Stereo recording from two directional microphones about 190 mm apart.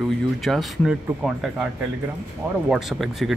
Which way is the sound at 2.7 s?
Centre (ahead or behind).